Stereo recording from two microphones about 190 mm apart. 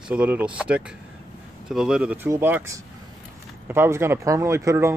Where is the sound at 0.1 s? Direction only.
5° right (ahead or behind).